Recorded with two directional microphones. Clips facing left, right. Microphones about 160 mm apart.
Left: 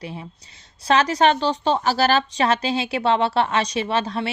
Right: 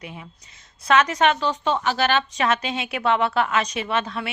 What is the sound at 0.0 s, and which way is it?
A woman's voice, 30° left (ahead or behind).